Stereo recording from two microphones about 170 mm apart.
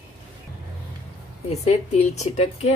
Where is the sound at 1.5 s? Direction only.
40° left (ahead or behind).